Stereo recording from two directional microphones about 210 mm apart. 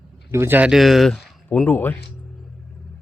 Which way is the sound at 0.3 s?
10° right (ahead or behind).